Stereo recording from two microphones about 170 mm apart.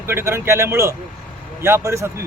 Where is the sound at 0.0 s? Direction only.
15° right (ahead or behind).